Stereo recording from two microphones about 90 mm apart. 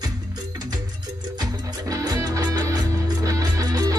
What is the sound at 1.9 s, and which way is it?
Music, 45° right (ahead or behind).